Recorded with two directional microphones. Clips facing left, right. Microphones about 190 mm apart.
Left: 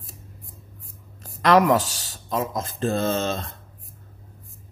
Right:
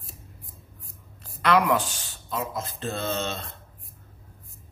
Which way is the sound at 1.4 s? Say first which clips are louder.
Left 4 dB; 40° left (ahead or behind).